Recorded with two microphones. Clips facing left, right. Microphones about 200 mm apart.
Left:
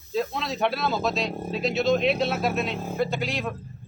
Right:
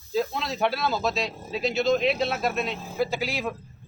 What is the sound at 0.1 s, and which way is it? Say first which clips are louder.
A man's voice: even; centre (ahead or behind).